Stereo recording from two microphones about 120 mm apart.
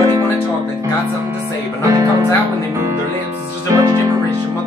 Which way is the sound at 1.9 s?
25° right (ahead or behind).